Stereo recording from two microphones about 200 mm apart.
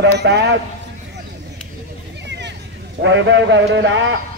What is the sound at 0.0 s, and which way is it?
Speech, 60° right (ahead or behind).